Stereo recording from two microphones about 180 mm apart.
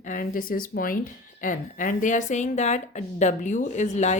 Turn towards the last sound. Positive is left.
turn(degrees=40)  # may be behind; listen again after turning